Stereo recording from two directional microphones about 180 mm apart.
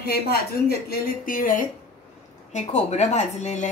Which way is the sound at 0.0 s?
60° left (ahead or behind).